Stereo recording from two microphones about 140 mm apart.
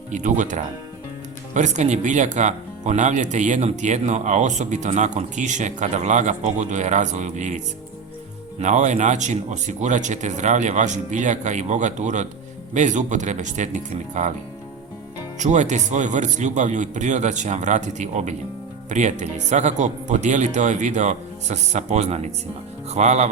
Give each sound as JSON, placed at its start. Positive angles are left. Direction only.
{"t": 0.1, "sound": "speech", "side_deg": -65}
{"t": 15.4, "sound": "speech", "side_deg": -55}